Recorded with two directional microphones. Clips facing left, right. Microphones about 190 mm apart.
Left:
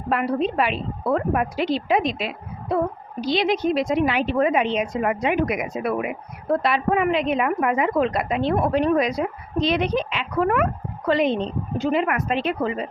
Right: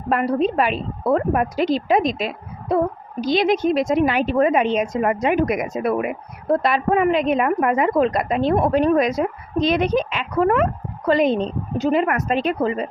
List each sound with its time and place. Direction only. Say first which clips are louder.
0.1 s a woman's voice: right 3 dB; 40° right (ahead or behind)